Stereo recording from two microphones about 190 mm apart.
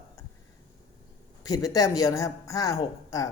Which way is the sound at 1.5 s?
20° left (ahead or behind).